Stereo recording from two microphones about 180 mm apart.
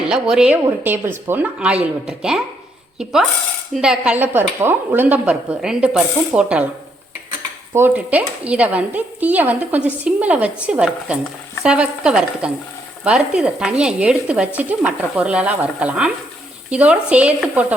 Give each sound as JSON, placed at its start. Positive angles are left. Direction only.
{"t": 0.0, "sound": "a woman's voice", "side_deg": -5}
{"t": 7.7, "sound": "a woman's voice", "side_deg": -10}